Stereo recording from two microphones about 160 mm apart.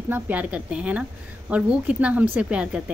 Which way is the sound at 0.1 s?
10° right (ahead or behind).